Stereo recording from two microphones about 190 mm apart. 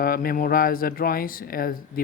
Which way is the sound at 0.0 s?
50° left (ahead or behind).